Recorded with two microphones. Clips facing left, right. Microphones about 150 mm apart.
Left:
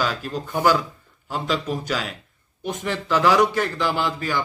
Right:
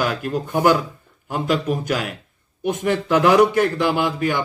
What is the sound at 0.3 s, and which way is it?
A man's voice, 15° right (ahead or behind).